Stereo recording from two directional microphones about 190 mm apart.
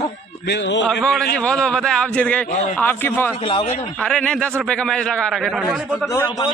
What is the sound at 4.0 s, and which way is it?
A man's voice, 5° left (ahead or behind).